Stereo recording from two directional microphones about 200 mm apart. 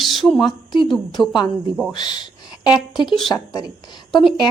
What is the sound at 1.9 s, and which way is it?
A woman's voice, 20° left (ahead or behind).